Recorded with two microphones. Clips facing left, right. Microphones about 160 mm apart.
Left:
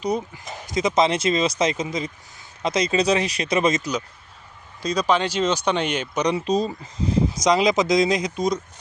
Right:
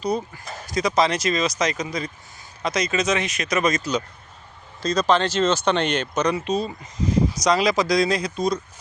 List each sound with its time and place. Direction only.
0.0 s speech: 15° left (ahead or behind)
4.8 s speech: 10° left (ahead or behind)
6.3 s speech: 35° left (ahead or behind)
7.3 s speech: 20° left (ahead or behind)